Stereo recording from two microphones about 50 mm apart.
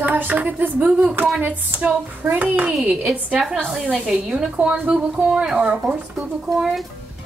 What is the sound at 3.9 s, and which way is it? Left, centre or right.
A woman's voice, centre.